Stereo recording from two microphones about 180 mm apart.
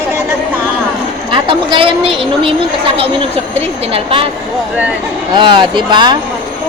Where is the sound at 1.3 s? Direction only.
30° right (ahead or behind).